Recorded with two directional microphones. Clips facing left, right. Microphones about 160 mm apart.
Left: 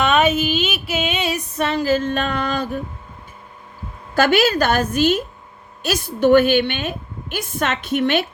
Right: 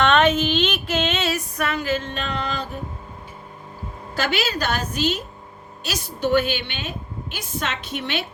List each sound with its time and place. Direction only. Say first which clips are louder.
0.0 s female singing: left 1 dB; 10° left (ahead or behind); by 2.6 s 50° left (ahead or behind)
4.1 s a woman's voice: left 8 dB; 50° left (ahead or behind)